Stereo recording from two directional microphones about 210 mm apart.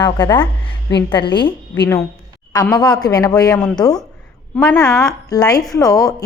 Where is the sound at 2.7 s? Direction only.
20° left (ahead or behind).